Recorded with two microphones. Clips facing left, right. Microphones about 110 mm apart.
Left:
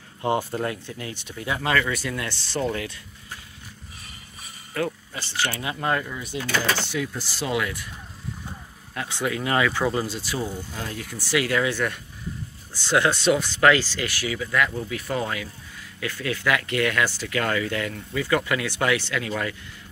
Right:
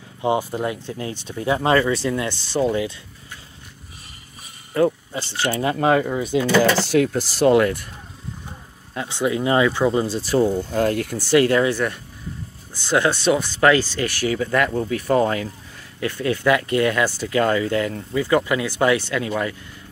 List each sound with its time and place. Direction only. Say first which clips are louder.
0.2 s speech: right 3 dB; 15° right (ahead or behind)
0.8 s speech: right 6 dB; 30° right (ahead or behind)
4.7 s speech: right 9 dB; 25° right (ahead or behind)
5.8 s speech: right 7 dB; 80° right
6.0 s speech: right 11 dB; 50° right (ahead or behind)
6.8 s speech: right 10 dB; 75° right (ahead or behind)
7.5 s speech: right 10 dB; 45° right (ahead or behind)
8.9 s speech: right 5 dB; 25° right (ahead or behind); by 11.1 s 55° right (ahead or behind)
11.3 s speech: right 7 dB; 35° right (ahead or behind)
11.7 s speech: right 4 dB; 25° right (ahead or behind)
14.2 s speech: right 5 dB; 40° right (ahead or behind); by 19.5 s 25° right (ahead or behind)